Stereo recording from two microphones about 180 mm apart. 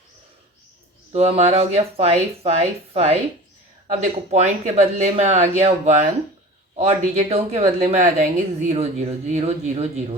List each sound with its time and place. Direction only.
1.1 s speech: 35° right (ahead or behind)